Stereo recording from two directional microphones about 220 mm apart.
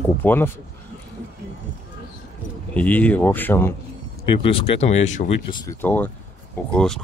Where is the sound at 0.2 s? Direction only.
10° left (ahead or behind).